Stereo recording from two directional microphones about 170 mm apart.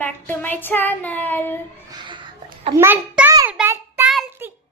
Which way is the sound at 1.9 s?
25° right (ahead or behind).